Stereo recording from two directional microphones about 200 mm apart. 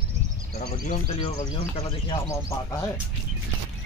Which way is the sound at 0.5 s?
35° left (ahead or behind).